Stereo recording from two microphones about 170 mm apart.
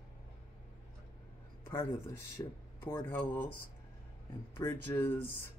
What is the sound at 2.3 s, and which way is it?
Speech, 15° left (ahead or behind).